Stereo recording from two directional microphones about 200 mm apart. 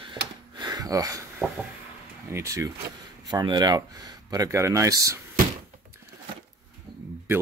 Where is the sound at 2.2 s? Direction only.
15° right (ahead or behind).